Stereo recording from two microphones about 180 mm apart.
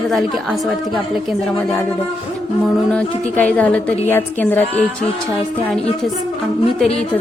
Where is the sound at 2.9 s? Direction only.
5° left (ahead or behind).